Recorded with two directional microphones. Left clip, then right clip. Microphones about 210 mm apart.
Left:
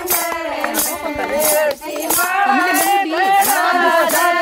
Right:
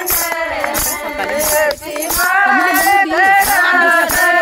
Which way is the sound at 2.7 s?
Centre (ahead or behind).